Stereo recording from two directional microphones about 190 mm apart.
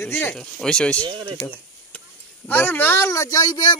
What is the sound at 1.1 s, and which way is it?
Speech, 25° right (ahead or behind).